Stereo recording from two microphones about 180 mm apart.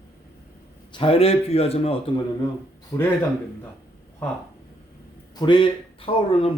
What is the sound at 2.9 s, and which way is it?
Speech, 15° left (ahead or behind).